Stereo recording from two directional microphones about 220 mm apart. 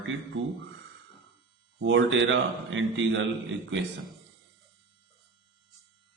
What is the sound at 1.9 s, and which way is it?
Speech, 60° right (ahead or behind).